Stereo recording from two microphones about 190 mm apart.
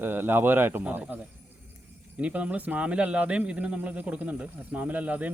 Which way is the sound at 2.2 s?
5° right (ahead or behind).